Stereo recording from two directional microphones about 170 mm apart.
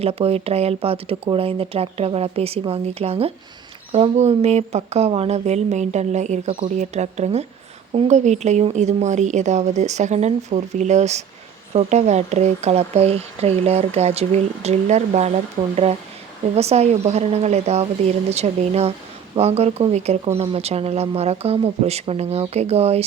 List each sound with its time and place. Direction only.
0.0 s speech: 35° right (ahead or behind)